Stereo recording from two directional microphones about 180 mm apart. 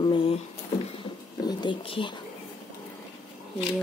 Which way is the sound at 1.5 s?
25° left (ahead or behind).